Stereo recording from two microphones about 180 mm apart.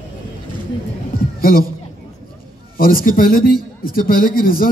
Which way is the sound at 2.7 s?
50° left (ahead or behind).